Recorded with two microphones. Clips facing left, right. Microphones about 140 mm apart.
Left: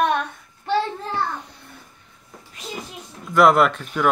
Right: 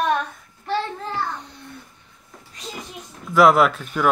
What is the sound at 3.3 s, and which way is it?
Speech, centre (ahead or behind).